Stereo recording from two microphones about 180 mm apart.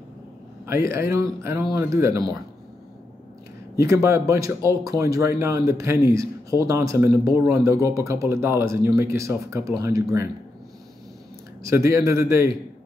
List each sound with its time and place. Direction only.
1.1 s a man's voice: 15° right (ahead or behind)
3.7 s a man's voice: 15° right (ahead or behind)
11.6 s a man's voice: 15° right (ahead or behind)